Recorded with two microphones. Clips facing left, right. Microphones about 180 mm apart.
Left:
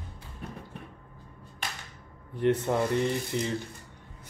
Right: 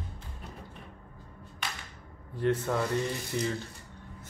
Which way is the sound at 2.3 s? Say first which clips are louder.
Left 3 dB; 20° left (ahead or behind).